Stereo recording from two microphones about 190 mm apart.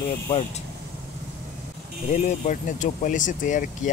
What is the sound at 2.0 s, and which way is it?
Speech, 40° left (ahead or behind).